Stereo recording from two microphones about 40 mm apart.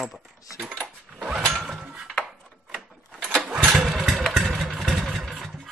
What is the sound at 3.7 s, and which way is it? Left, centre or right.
Motorcycle, centre.